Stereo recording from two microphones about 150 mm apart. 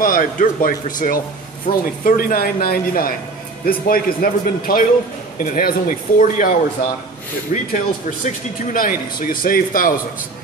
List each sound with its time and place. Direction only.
0.0 s a man's voice: 65° left (ahead or behind)